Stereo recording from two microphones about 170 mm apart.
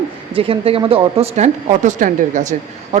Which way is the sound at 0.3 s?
30° right (ahead or behind).